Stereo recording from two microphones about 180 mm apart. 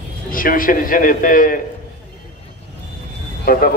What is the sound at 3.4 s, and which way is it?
Speech, 55° left (ahead or behind).